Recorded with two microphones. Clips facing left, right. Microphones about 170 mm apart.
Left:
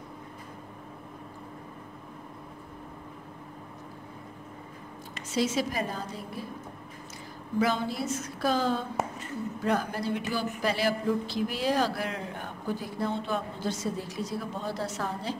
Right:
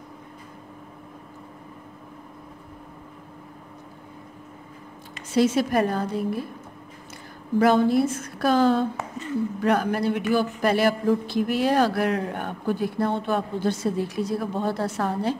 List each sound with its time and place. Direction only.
5.3 s speech: 55° right (ahead or behind)
7.5 s speech: 55° right (ahead or behind)